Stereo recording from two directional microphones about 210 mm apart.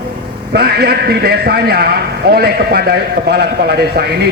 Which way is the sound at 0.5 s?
50° right (ahead or behind).